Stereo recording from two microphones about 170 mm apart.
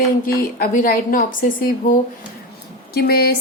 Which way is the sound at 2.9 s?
65° left (ahead or behind).